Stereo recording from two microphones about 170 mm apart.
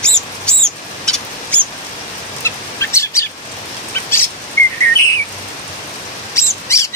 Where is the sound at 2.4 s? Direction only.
15° left (ahead or behind).